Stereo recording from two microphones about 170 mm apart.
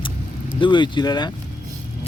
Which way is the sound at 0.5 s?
30° left (ahead or behind).